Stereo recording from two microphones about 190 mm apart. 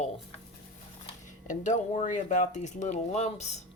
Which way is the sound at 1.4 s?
40° left (ahead or behind).